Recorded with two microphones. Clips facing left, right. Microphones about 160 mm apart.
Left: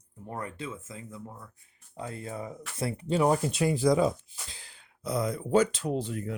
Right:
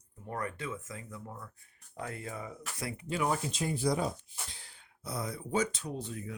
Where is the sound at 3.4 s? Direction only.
70° left (ahead or behind).